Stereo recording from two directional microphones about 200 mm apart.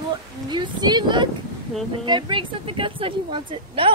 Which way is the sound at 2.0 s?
25° right (ahead or behind).